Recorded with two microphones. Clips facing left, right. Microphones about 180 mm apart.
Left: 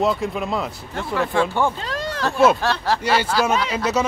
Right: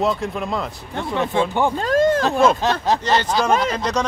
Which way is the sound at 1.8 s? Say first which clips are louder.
Right 11 dB; 50° right (ahead or behind).